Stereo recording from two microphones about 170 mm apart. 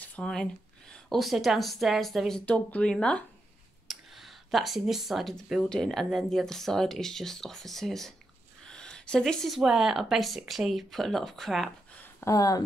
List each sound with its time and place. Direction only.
0.0 s speech: 5° left (ahead or behind)
12.0 s speech: 15° left (ahead or behind)